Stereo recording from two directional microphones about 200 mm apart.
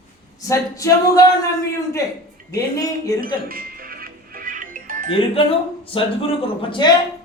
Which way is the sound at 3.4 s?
45° right (ahead or behind).